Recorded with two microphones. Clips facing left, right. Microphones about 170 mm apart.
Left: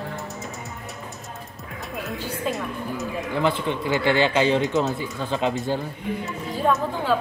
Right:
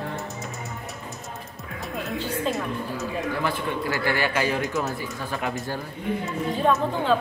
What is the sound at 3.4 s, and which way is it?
Speech, 20° left (ahead or behind).